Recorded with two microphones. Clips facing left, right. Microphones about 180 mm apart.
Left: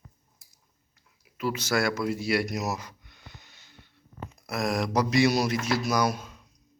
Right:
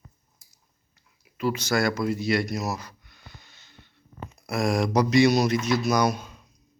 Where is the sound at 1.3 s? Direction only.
5° left (ahead or behind).